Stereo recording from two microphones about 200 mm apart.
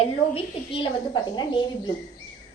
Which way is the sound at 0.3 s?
25° left (ahead or behind).